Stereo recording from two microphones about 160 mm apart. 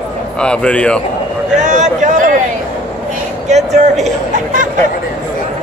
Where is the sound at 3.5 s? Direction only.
45° right (ahead or behind).